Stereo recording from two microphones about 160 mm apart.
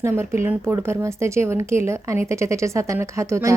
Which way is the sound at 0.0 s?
15° right (ahead or behind).